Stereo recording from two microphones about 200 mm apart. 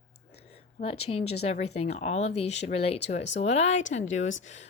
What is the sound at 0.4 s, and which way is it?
Speech, 30° left (ahead or behind).